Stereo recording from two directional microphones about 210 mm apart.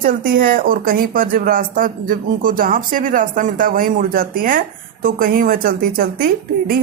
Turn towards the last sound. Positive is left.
turn(degrees=-45)  # may be behind; listen again after turning